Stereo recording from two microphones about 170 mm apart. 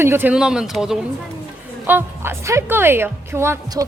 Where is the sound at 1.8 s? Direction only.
10° right (ahead or behind).